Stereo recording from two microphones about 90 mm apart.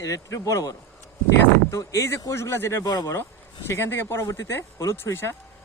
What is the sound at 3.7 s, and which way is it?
Speech, 30° left (ahead or behind).